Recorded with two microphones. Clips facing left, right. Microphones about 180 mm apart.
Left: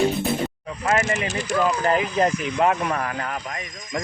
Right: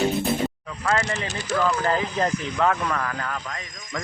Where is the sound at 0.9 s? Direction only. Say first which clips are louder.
Left 3 dB; 20° left (ahead or behind).